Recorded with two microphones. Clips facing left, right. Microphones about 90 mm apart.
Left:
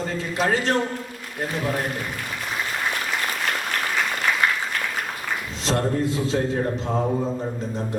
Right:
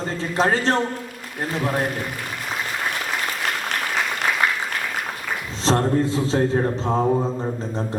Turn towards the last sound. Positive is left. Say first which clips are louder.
# right 3 dB
turn(degrees=-35)  # may be behind; listen again after turning